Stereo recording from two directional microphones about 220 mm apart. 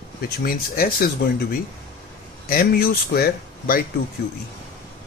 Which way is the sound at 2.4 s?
40° left (ahead or behind).